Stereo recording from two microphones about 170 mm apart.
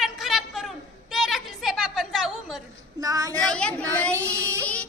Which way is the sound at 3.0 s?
20° right (ahead or behind).